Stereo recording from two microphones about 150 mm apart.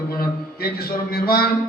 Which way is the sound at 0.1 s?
85° left.